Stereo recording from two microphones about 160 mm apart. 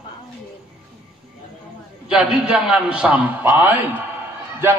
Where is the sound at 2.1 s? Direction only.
10° right (ahead or behind).